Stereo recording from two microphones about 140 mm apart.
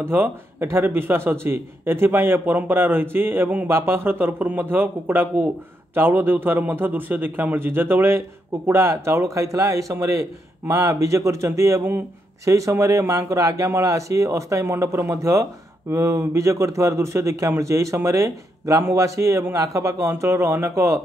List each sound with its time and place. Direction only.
0.1 s a man's voice: 15° right (ahead or behind)